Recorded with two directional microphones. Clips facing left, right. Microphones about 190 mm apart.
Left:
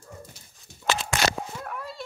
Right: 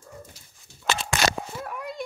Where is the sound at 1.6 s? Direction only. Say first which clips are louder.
Right 2 dB; 15° right (ahead or behind).